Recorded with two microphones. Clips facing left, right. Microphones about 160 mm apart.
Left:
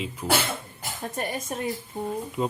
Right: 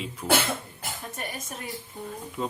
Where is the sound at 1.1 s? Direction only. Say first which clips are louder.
Left 6 dB; 35° left (ahead or behind).